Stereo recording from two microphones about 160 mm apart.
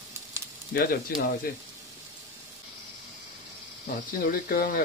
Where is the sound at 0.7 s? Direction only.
75° left (ahead or behind).